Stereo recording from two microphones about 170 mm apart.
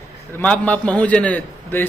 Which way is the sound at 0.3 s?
10° left (ahead or behind).